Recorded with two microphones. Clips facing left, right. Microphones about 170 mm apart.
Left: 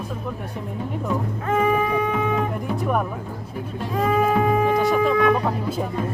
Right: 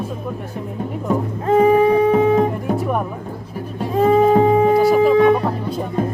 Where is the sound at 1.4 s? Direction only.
30° right (ahead or behind).